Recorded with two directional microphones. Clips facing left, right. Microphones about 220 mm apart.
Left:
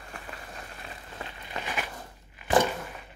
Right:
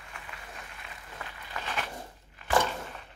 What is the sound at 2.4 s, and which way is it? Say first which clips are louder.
Thunk: left 4 dB; 15° left (ahead or behind).